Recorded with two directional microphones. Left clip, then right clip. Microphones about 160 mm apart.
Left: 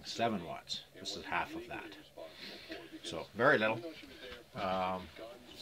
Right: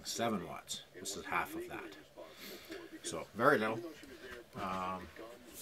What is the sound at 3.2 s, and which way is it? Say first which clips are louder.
Speech: left 1 dB; 15° left (ahead or behind).